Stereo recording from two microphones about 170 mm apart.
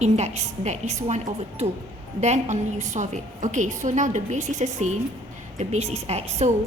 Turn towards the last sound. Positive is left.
turn(degrees=-40)  # may be behind; listen again after turning